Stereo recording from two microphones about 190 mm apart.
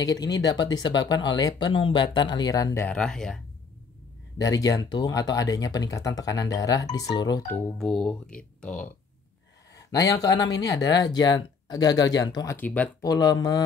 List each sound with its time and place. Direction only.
0.1 s speech: 20° left (ahead or behind); by 3.3 s 5° left (ahead or behind)
4.5 s speech: 20° left (ahead or behind)
7.4 s speech: 5° left (ahead or behind)
9.8 s speech: 20° left (ahead or behind)
12.5 s speech: 10° left (ahead or behind)
13.0 s speech: 20° left (ahead or behind)